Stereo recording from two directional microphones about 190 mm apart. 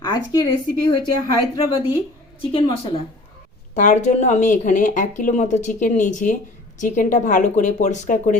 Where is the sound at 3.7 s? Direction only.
40° left (ahead or behind).